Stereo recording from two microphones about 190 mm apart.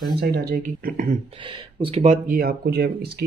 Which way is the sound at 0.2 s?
55° right (ahead or behind).